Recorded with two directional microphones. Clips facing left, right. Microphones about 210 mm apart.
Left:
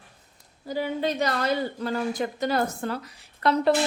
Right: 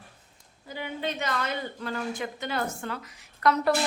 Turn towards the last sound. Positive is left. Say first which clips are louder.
# left 2 dB
turn(degrees=30)  # may be behind; listen again after turning